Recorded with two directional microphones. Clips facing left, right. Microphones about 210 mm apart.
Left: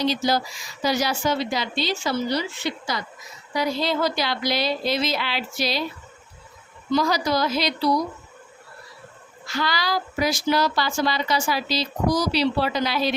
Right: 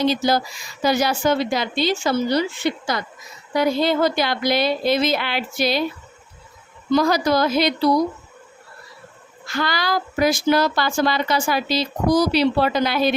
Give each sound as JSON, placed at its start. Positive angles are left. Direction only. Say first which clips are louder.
{"t": 0.0, "sound": "a woman's voice", "louder": "right 3 dB", "side_deg": -55}
{"t": 6.9, "sound": "a woman's voice", "louder": "right 4 dB", "side_deg": -55}
{"t": 9.5, "sound": "a woman's voice", "louder": "right 3 dB", "side_deg": -50}